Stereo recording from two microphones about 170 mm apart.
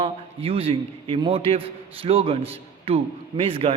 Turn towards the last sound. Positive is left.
turn(degrees=-35)  # may be behind; listen again after turning